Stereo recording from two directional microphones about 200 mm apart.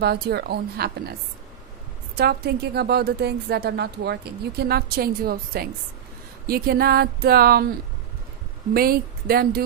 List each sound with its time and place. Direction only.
0.0 s a woman's voice: 50° right (ahead or behind)
2.1 s a woman's voice: 50° right (ahead or behind)
8.7 s a woman's voice: 50° right (ahead or behind)